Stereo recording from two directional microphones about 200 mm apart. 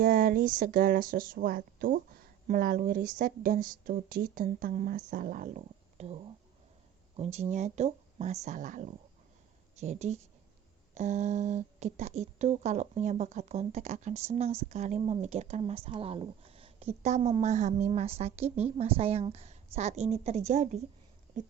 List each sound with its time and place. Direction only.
0.0 s speech: 45° right (ahead or behind)
7.2 s speech: 30° right (ahead or behind)